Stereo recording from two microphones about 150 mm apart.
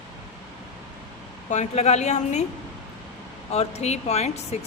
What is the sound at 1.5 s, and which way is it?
Speech, 50° left (ahead or behind).